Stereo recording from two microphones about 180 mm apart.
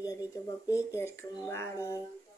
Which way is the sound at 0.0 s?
20° left (ahead or behind).